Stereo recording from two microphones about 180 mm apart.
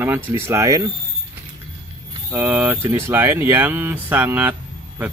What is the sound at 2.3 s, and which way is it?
Speech, 10° right (ahead or behind).